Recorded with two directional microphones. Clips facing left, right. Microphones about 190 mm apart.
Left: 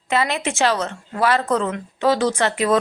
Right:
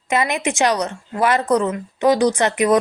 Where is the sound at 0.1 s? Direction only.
15° right (ahead or behind).